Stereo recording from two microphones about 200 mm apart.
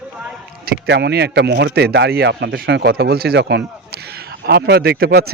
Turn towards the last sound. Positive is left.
turn(degrees=-50)  # may be behind; listen again after turning